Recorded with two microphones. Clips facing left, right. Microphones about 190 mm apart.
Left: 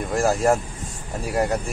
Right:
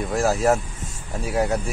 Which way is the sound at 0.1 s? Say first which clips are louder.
Left 1 dB; centre (ahead or behind).